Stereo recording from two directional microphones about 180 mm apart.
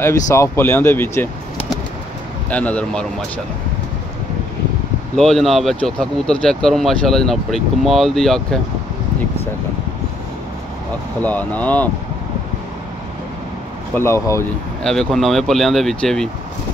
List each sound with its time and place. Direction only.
0.0 s speech: 15° left (ahead or behind)
2.5 s speech: 5° left (ahead or behind)
5.1 s speech: centre (ahead or behind)
11.1 s speech: 10° left (ahead or behind)
13.9 s speech: 15° left (ahead or behind)
14.8 s speech: 5° left (ahead or behind)